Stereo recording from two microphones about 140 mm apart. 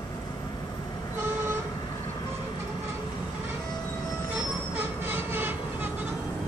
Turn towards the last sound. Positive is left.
turn(degrees=-15)  # may be behind; listen again after turning